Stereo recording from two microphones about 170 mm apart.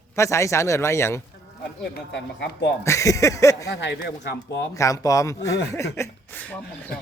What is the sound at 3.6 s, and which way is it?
Speech, 90° left.